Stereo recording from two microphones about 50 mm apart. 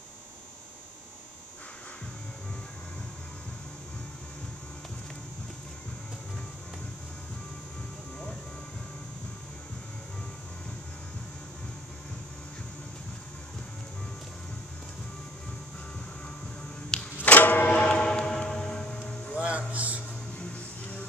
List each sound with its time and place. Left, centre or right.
17.2 s a sound: left
17.6 s train: left
18.9 s music: left
19.3 s music: right